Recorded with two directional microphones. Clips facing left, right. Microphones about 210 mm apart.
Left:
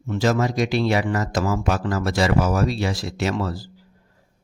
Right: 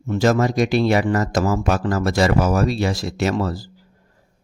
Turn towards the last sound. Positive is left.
turn(degrees=-45)  # may be behind; listen again after turning